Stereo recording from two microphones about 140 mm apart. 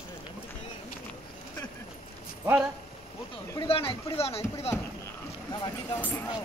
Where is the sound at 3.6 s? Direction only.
40° left (ahead or behind).